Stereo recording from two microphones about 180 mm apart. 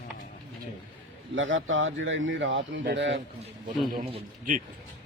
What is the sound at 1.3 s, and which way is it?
Speech, 90° right.